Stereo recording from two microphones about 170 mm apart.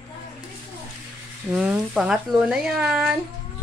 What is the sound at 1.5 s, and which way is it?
Speech, 5° right (ahead or behind).